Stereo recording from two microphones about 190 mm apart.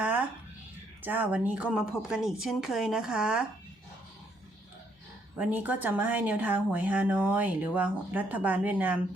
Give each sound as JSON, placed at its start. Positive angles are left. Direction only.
{"t": 0.0, "sound": "a sound", "side_deg": -10}
{"t": 1.0, "sound": "speech", "side_deg": -10}
{"t": 5.4, "sound": "speech", "side_deg": -10}